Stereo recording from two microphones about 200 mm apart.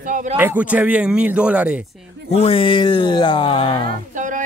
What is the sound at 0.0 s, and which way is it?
Speech, 40° right (ahead or behind).